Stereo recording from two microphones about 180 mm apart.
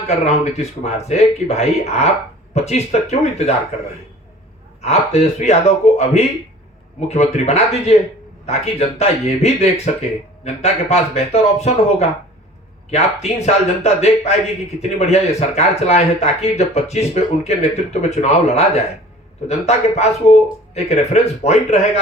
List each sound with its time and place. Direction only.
0.1 s speech: 40° left (ahead or behind)
4.8 s speech: 40° left (ahead or behind)